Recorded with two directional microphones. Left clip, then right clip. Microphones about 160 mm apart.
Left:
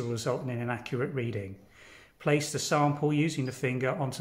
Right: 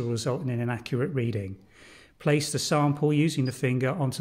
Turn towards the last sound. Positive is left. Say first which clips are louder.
# right 2 dB
turn(degrees=-55)  # may be behind; listen again after turning